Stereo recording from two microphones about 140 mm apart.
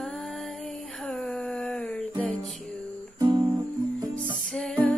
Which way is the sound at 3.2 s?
25° right (ahead or behind).